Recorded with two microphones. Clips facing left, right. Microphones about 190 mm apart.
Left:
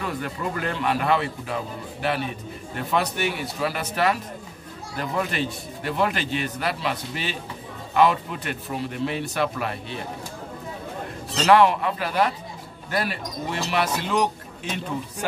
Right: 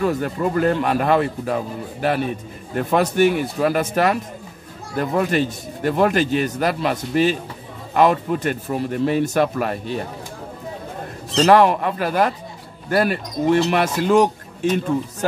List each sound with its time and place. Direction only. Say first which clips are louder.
0.0 s a man's voice: right 8 dB; 40° right (ahead or behind)
11.4 s a man's voice: right 3 dB; 45° right (ahead or behind)